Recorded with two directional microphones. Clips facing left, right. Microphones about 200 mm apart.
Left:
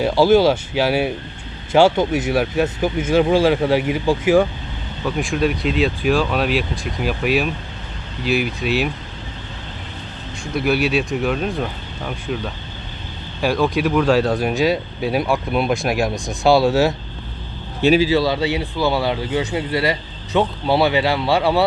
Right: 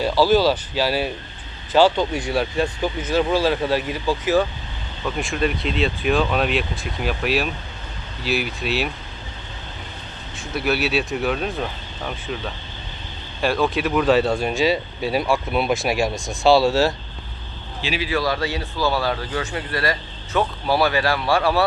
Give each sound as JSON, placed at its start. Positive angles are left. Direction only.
{"t": 0.7, "sound": "speech", "side_deg": 15}
{"t": 2.6, "sound": "speech", "side_deg": 25}
{"t": 5.0, "sound": "speech", "side_deg": 0}
{"t": 8.2, "sound": "speech", "side_deg": 50}
{"t": 10.4, "sound": "speech", "side_deg": 0}
{"t": 13.4, "sound": "speech", "side_deg": 0}
{"t": 17.8, "sound": "a man's voice", "side_deg": 40}
{"t": 18.1, "sound": "speech", "side_deg": 20}